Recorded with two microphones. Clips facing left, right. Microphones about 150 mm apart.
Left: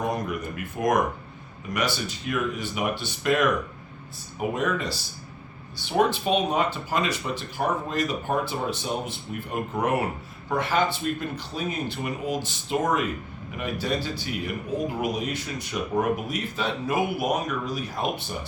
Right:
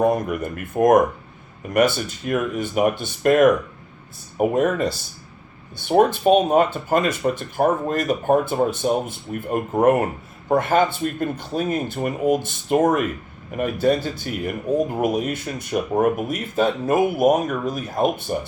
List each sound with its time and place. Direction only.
0.0 s speech: 50° right (ahead or behind)